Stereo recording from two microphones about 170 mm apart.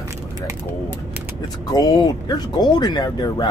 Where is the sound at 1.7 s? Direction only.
20° left (ahead or behind).